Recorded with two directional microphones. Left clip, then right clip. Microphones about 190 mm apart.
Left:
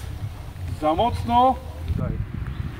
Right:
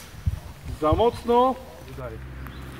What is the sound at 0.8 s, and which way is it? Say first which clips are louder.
Speech: even; 50° left (ahead or behind).